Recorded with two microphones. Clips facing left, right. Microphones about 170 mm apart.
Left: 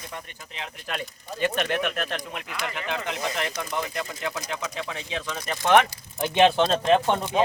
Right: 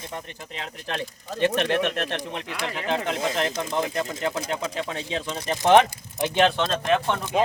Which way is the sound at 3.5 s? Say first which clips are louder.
Right 3 dB; 25° right (ahead or behind).